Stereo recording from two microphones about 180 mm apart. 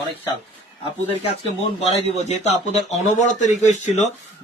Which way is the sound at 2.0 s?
35° left (ahead or behind).